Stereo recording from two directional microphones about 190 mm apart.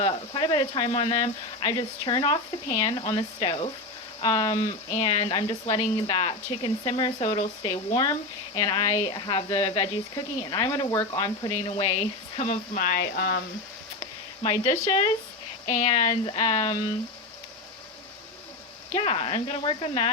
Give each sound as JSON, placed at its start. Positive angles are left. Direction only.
{"t": 0.0, "sound": "speech", "side_deg": 25}
{"t": 11.5, "sound": "speech", "side_deg": 30}
{"t": 12.7, "sound": "speech", "side_deg": 50}
{"t": 14.0, "sound": "a sound", "side_deg": 25}
{"t": 15.6, "sound": "speech", "side_deg": 35}
{"t": 18.9, "sound": "speech", "side_deg": 30}